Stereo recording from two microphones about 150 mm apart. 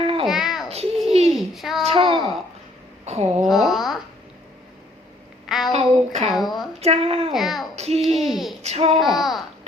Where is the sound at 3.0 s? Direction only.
45° right (ahead or behind).